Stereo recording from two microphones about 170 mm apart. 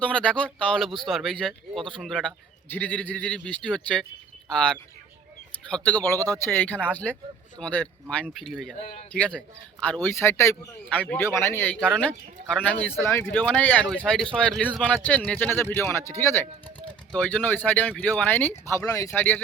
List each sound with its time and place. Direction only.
0.0 s speech: 5° left (ahead or behind)
6.1 s speech: 20° right (ahead or behind)
6.5 s speech: 10° left (ahead or behind)
13.1 s speech: 15° left (ahead or behind)